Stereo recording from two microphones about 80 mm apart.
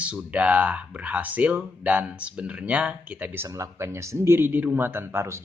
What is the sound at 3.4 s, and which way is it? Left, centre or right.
A man's voice, right.